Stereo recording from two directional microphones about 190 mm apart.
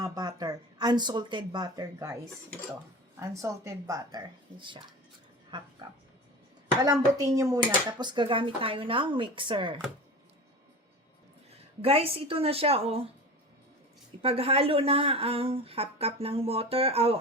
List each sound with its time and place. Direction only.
0.0 s speech: 20° right (ahead or behind)
3.2 s speech: 15° right (ahead or behind)
5.5 s speech: 25° right (ahead or behind)
6.8 s speech: 20° right (ahead or behind)
11.8 s a woman's voice: 30° right (ahead or behind)
14.2 s a woman's voice: 30° right (ahead or behind)